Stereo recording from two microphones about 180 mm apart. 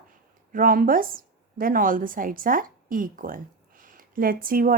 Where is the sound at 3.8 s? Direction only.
50° right (ahead or behind).